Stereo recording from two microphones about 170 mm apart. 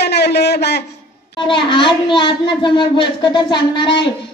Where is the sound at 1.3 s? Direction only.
30° left (ahead or behind).